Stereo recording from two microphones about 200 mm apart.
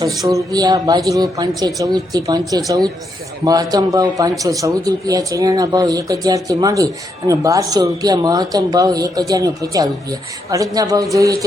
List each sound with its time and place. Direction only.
0.3 s a man's voice: 15° right (ahead or behind)